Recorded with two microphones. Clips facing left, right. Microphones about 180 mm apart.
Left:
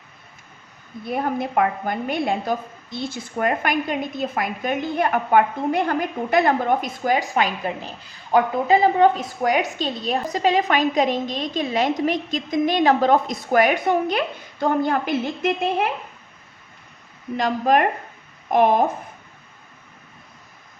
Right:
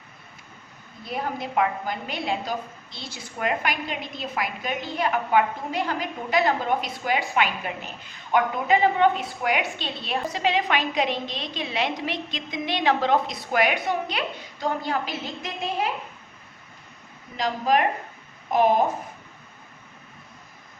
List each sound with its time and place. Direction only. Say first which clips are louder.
1.0 s a woman's voice: left 6 dB; 55° left (ahead or behind)
17.3 s a woman's voice: left 4 dB; 55° left (ahead or behind)